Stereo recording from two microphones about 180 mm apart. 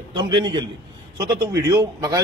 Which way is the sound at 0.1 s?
25° right (ahead or behind).